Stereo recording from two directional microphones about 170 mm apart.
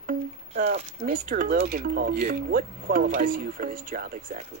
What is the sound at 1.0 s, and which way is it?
Speech, 55° right (ahead or behind).